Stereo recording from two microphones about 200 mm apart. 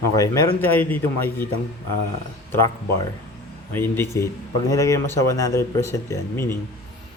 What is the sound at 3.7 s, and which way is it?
Speech, 10° left (ahead or behind).